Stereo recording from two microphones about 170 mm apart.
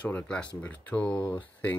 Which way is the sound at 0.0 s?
10° left (ahead or behind).